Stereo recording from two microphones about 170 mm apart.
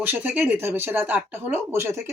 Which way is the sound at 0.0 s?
10° right (ahead or behind).